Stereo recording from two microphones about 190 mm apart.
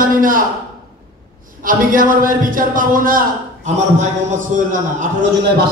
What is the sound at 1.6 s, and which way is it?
A man's voice, 45° right (ahead or behind).